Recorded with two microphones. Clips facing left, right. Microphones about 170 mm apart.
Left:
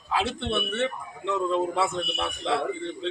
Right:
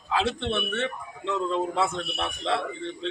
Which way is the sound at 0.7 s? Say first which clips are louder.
Left 2 dB; 20° left (ahead or behind).